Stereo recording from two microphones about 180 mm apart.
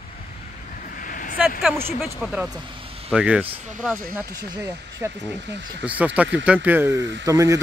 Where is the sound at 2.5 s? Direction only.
30° right (ahead or behind).